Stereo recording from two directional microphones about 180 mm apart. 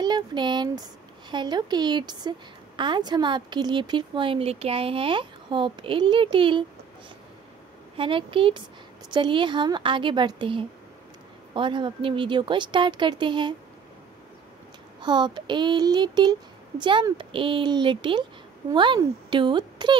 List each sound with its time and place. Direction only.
0.0 s a woman's voice: 25° right (ahead or behind)
8.0 s a woman's voice: 30° right (ahead or behind)
15.0 s a woman's voice: 25° right (ahead or behind)